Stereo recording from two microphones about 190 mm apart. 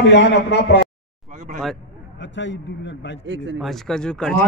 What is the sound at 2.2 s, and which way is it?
A man's voice, 70° left (ahead or behind).